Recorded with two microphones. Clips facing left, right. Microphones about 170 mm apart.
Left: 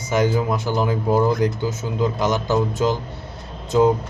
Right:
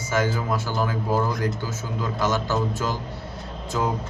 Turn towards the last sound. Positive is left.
turn(degrees=20)  # may be behind; listen again after turning